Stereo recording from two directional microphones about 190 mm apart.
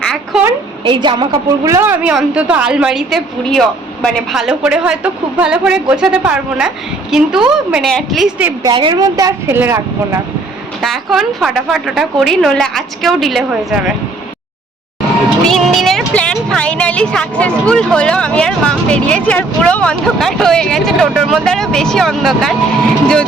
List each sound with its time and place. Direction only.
0.0 s a sound: 5° left (ahead or behind)
0.9 s a woman's voice: 25° right (ahead or behind); by 8.4 s centre (ahead or behind)
8.7 s a woman's voice: 25° right (ahead or behind)
10.8 s a woman's voice: centre (ahead or behind)
15.4 s a woman's voice: centre (ahead or behind)